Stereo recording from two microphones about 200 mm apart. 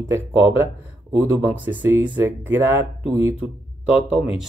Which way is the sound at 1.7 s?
10° right (ahead or behind).